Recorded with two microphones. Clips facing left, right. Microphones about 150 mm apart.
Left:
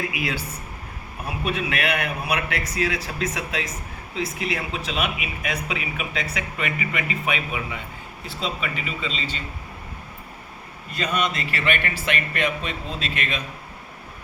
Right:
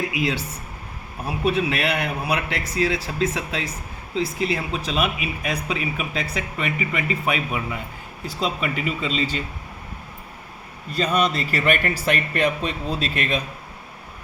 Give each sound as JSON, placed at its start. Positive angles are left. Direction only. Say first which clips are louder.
{"t": 1.5, "sound": "speech", "louder": "right 3 dB", "side_deg": -30}
{"t": 8.6, "sound": "a man's voice", "louder": "right 4 dB", "side_deg": -45}
{"t": 10.9, "sound": "speech", "louder": "right 4 dB", "side_deg": -35}